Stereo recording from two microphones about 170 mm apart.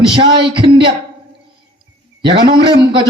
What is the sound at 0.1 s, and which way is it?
Speech, 30° right (ahead or behind).